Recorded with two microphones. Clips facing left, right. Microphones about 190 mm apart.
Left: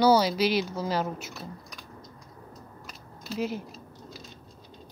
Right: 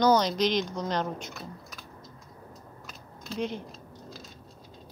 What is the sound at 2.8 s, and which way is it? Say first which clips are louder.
Typing: left 1 dB; centre (ahead or behind).